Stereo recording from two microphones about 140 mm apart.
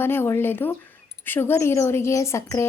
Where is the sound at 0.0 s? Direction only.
15° left (ahead or behind).